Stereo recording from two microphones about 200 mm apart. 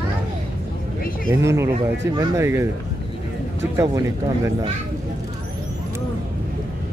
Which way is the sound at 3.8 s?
15° right (ahead or behind).